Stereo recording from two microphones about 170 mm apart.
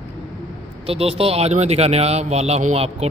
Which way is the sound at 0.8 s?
35° right (ahead or behind).